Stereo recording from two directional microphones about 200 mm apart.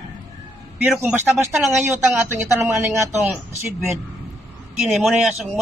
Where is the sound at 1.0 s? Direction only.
5° right (ahead or behind).